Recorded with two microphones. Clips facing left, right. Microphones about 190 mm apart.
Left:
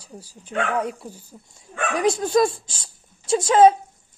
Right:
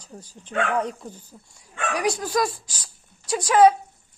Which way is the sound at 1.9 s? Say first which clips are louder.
Left 5 dB; 25° left (ahead or behind).